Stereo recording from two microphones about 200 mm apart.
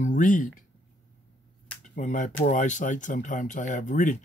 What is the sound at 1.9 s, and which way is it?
Speech, 40° left (ahead or behind).